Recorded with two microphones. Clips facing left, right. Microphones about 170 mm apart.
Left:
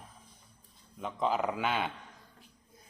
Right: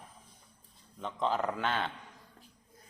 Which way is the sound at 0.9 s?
5° left (ahead or behind).